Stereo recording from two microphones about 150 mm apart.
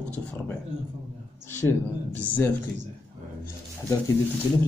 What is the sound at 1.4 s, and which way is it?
Speech, 15° left (ahead or behind).